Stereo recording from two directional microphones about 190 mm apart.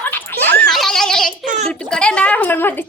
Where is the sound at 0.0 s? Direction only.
10° left (ahead or behind).